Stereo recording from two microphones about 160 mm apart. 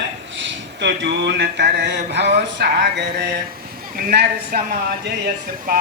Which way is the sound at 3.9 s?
70° right (ahead or behind).